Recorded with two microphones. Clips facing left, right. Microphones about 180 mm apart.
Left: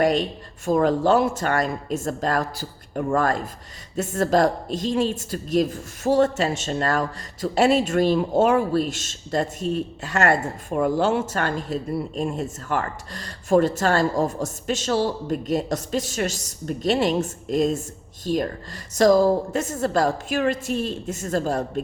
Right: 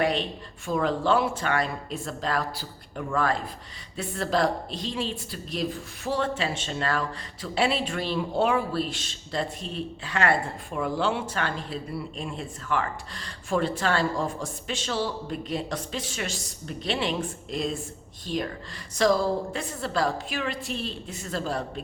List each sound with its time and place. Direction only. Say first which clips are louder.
0.0 s a woman's voice: left 5 dB; 40° left (ahead or behind)